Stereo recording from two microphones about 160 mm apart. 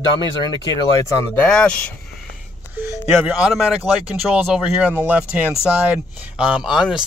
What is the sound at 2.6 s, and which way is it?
Speech, 10° right (ahead or behind).